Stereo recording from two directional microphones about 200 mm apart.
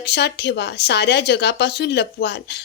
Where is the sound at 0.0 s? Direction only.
55° left (ahead or behind).